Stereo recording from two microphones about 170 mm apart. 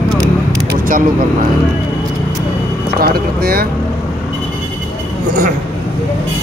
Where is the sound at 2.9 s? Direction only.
65° right (ahead or behind).